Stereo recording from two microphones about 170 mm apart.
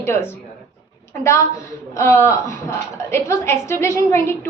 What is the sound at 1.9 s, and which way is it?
A woman's voice, 15° left (ahead or behind).